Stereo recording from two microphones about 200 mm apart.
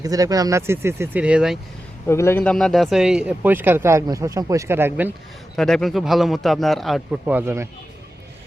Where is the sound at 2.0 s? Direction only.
10° left (ahead or behind); by 5.1 s 10° right (ahead or behind).